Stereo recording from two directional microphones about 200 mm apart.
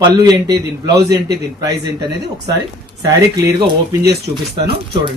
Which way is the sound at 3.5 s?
15° right (ahead or behind).